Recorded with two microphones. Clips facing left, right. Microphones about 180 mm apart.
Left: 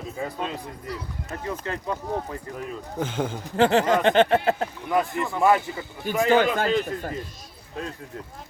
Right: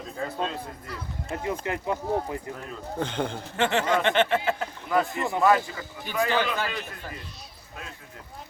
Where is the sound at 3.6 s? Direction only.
35° left (ahead or behind).